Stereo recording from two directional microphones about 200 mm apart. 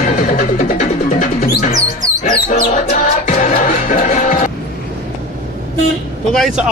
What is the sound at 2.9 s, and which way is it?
Music, 35° left (ahead or behind).